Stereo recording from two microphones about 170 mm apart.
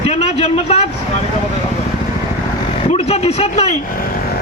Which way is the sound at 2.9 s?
35° left (ahead or behind).